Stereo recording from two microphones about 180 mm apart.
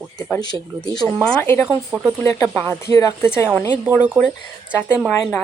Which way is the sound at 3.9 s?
10° right (ahead or behind).